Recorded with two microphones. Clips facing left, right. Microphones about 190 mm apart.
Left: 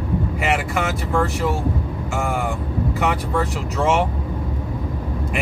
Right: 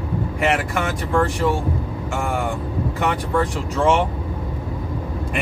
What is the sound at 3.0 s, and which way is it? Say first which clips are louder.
Speech: right 2 dB; 5° left (ahead or behind).